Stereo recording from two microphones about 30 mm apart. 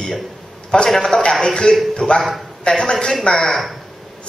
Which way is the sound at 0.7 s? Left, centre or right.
Left.